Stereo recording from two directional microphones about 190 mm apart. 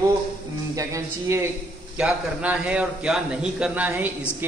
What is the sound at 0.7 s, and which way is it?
A man's voice, 15° right (ahead or behind).